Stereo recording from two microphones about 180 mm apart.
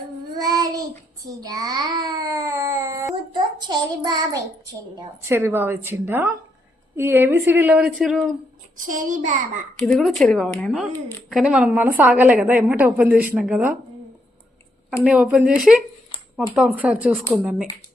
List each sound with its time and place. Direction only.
0.3 s child singing: 20° right (ahead or behind)
1.3 s a sound: 20° right (ahead or behind)
6.9 s a woman's voice: 10° right (ahead or behind)
8.9 s a child's voice: 45° right (ahead or behind)
9.8 s a woman's voice: centre (ahead or behind)
15.0 s a woman's voice: 5° right (ahead or behind)